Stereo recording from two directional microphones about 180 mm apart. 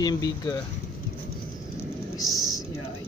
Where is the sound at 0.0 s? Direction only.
20° left (ahead or behind).